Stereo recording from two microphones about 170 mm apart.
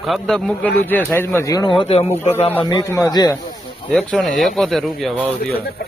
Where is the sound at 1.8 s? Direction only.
35° left (ahead or behind).